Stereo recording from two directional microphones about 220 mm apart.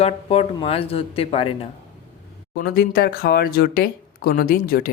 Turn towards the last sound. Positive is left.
turn(degrees=40)  # may be behind; listen again after turning